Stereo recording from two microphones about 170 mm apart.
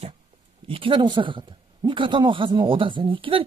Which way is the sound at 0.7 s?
30° right (ahead or behind).